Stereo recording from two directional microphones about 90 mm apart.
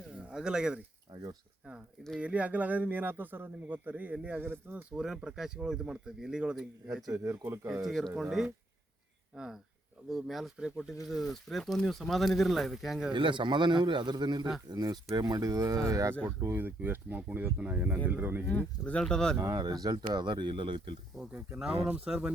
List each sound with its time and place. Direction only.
0.1 s speech: 10° right (ahead or behind)
1.1 s speech: 45° right (ahead or behind)
2.1 s speech: 15° right (ahead or behind)
4.9 s speech: 5° right (ahead or behind)
7.2 s speech: 30° right (ahead or behind)
7.9 s speech: 5° left (ahead or behind)
13.1 s a man's voice: 60° right (ahead or behind); by 16.1 s 40° right (ahead or behind)
16.4 s speech: 20° right (ahead or behind)
18.8 s speech: 10° left (ahead or behind)
19.5 s a man's voice: 45° right (ahead or behind); by 20.9 s 70° right (ahead or behind)
21.5 s speech: 10° right (ahead or behind)